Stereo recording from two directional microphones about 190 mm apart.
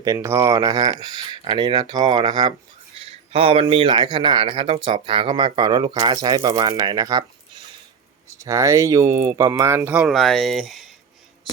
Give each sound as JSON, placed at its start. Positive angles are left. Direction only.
{"t": 0.0, "sound": "speech", "side_deg": -15}
{"t": 8.3, "sound": "speech", "side_deg": -15}